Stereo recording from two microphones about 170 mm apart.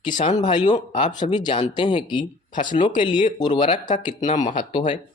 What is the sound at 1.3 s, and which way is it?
Speech, 25° left (ahead or behind).